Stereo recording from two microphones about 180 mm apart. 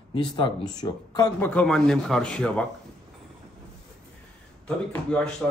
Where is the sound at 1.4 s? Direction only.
5° left (ahead or behind).